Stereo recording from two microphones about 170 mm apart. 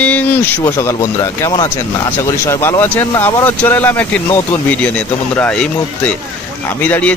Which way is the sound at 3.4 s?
10° left (ahead or behind).